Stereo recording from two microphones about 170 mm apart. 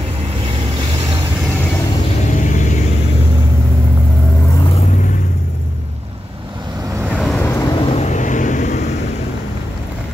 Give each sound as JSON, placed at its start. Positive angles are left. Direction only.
{"t": 2.3, "sound": "vehicle", "side_deg": 45}
{"t": 7.0, "sound": "vehicle", "side_deg": -5}
{"t": 7.3, "sound": "vehicle", "side_deg": 15}